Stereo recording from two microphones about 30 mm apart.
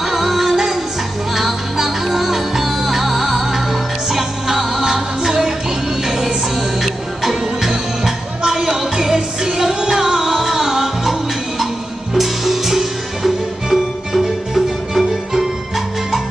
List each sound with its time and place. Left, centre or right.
0.0 s music: centre
8.4 s music: right